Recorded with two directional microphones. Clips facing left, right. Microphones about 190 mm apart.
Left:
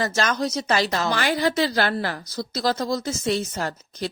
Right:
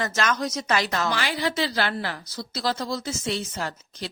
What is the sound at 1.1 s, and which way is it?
A woman's voice, 45° left (ahead or behind).